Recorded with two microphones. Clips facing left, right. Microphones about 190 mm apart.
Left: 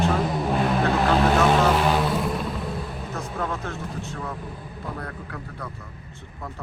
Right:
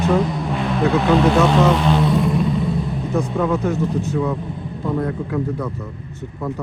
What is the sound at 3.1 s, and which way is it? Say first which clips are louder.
Speech: right 11 dB; 15° right (ahead or behind).